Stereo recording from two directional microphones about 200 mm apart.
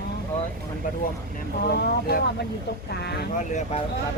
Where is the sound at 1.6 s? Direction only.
50° left (ahead or behind).